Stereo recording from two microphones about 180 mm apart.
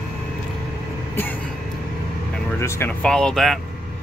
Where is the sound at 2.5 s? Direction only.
15° left (ahead or behind).